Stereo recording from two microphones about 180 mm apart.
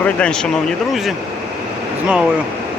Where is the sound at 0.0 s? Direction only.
5° left (ahead or behind).